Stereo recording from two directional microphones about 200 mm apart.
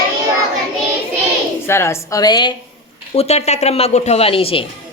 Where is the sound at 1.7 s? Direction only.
15° left (ahead or behind).